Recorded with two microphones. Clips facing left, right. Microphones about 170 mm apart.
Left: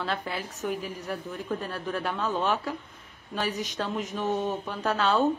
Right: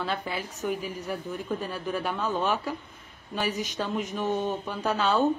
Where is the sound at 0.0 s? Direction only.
Centre (ahead or behind).